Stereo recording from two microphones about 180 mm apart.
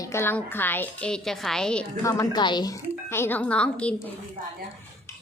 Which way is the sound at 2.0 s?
15° left (ahead or behind).